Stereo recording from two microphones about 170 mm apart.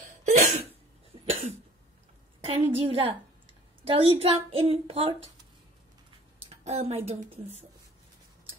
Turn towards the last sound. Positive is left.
turn(degrees=-35)  # may be behind; listen again after turning